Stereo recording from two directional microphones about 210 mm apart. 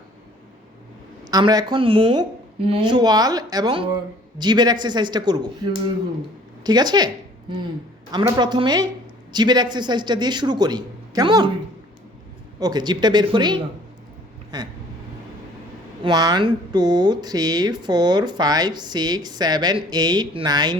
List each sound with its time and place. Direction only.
1.3 s speech: 20° right (ahead or behind)
6.7 s speech: 20° right (ahead or behind)
12.5 s speech: 20° right (ahead or behind)
16.0 s speech: 20° right (ahead or behind)